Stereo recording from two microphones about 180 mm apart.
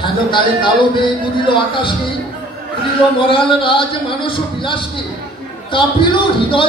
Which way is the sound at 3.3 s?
30° left (ahead or behind).